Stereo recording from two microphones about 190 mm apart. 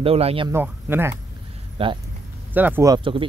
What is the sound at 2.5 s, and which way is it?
Speech, 10° right (ahead or behind).